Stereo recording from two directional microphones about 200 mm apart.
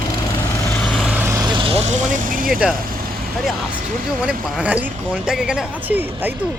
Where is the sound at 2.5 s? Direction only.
5° right (ahead or behind).